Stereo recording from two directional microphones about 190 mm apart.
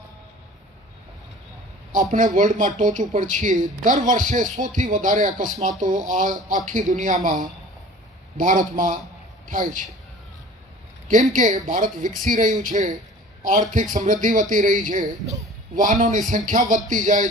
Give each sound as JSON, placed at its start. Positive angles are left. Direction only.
{"t": 1.9, "sound": "a man's voice", "side_deg": -45}
{"t": 8.4, "sound": "a man's voice", "side_deg": -45}
{"t": 11.1, "sound": "a man's voice", "side_deg": -40}